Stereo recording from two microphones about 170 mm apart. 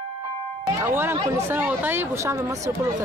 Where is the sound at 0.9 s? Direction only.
15° right (ahead or behind).